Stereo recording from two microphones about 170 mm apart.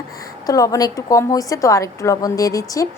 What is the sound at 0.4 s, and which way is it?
A woman's voice, 20° left (ahead or behind).